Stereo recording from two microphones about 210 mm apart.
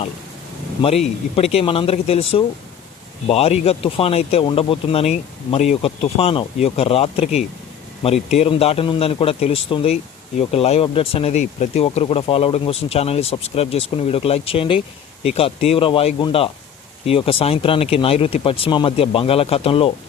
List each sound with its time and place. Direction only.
0.8 s speech: 30° left (ahead or behind)